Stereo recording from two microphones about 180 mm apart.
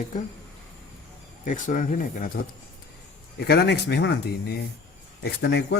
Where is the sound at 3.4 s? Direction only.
65° left (ahead or behind).